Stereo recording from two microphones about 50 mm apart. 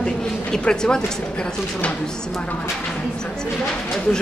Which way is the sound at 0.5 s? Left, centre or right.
Centre.